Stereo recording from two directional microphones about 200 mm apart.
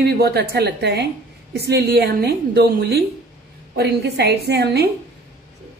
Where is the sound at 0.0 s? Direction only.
55° right (ahead or behind).